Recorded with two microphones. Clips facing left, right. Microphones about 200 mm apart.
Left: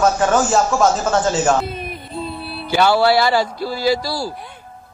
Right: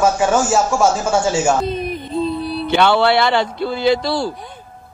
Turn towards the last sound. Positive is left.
turn(degrees=-25)  # may be behind; listen again after turning